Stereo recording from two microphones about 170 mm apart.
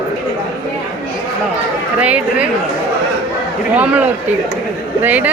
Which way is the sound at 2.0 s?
10° right (ahead or behind).